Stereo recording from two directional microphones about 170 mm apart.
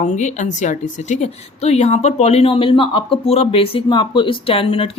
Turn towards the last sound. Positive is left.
turn(degrees=30)  # may be behind; listen again after turning